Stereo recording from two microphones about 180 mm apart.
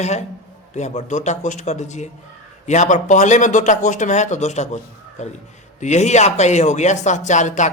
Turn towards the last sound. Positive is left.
turn(degrees=40)  # may be behind; listen again after turning